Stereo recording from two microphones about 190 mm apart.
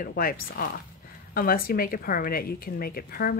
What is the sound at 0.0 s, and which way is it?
A woman's voice, 50° left (ahead or behind).